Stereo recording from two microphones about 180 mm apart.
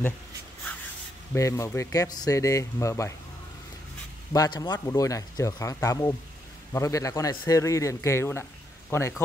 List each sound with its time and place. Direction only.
1.3 s speech: 15° left (ahead or behind)
4.3 s speech: 20° left (ahead or behind)